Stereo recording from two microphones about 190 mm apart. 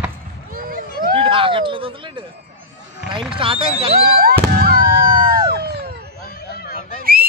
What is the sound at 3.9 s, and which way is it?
Fireworks, 50° right (ahead or behind).